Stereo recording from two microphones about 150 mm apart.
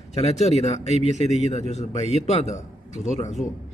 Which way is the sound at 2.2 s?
45° left (ahead or behind).